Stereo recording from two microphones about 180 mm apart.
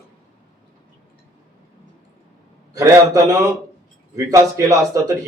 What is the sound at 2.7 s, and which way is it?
A man's voice, 20° right (ahead or behind).